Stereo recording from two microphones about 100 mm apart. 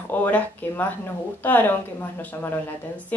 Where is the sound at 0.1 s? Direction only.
15° left (ahead or behind).